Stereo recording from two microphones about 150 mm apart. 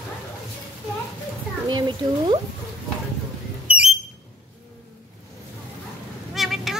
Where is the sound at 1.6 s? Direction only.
30° right (ahead or behind).